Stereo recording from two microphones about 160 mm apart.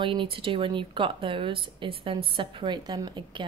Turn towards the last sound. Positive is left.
turn(degrees=-25)  # may be behind; listen again after turning